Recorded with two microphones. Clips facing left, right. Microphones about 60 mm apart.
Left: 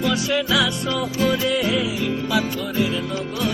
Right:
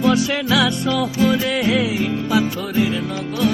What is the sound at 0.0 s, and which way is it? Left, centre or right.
Music, right.